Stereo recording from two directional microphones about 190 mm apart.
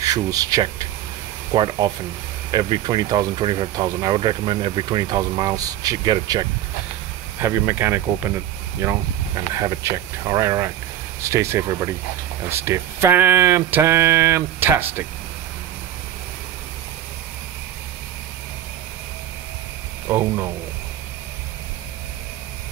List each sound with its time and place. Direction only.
0.0 s speech: 20° right (ahead or behind)
20.1 s speech: 10° right (ahead or behind)